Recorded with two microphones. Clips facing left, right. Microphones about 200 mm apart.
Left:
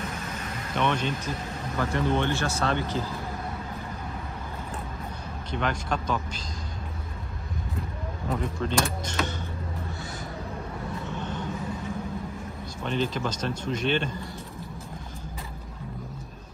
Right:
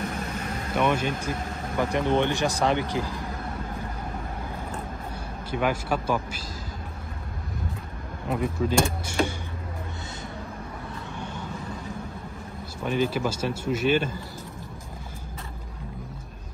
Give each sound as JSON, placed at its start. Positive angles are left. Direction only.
{"t": 0.7, "sound": "speech", "side_deg": -10}
{"t": 5.5, "sound": "speech", "side_deg": -10}
{"t": 8.3, "sound": "speech", "side_deg": -5}
{"t": 12.8, "sound": "speech", "side_deg": -10}